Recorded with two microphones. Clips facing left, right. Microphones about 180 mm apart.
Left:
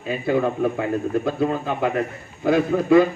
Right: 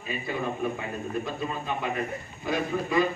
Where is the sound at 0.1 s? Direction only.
75° left (ahead or behind).